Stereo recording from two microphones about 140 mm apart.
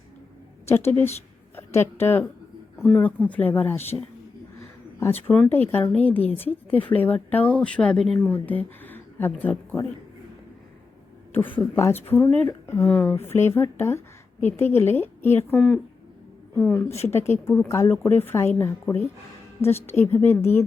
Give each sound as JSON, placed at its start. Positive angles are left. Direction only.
{"t": 0.7, "sound": "a woman's voice", "side_deg": 15}
{"t": 5.3, "sound": "speech", "side_deg": 10}
{"t": 11.7, "sound": "speech", "side_deg": 15}